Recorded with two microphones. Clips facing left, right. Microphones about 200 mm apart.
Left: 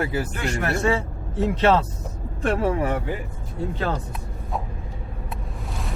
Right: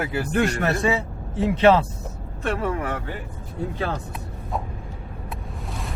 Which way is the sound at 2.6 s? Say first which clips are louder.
Left 4 dB; 25° left (ahead or behind).